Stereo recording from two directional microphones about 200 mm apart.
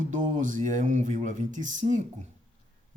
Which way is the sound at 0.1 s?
40° right (ahead or behind).